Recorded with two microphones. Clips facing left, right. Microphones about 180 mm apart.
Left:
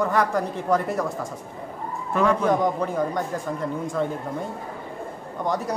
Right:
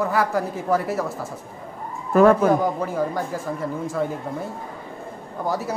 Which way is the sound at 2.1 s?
50° right (ahead or behind).